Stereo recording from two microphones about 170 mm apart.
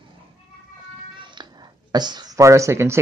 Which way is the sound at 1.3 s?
25° right (ahead or behind).